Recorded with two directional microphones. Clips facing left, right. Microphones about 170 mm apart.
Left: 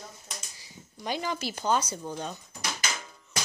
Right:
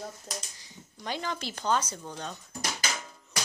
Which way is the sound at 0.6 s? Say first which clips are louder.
Left 6 dB; 10° left (ahead or behind).